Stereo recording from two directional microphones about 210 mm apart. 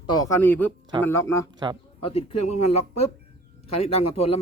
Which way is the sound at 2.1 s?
30° left (ahead or behind).